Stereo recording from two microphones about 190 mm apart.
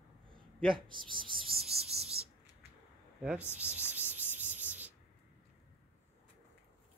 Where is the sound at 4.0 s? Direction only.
10° right (ahead or behind).